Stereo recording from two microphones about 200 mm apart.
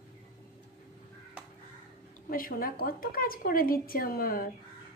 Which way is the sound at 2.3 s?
45° left (ahead or behind).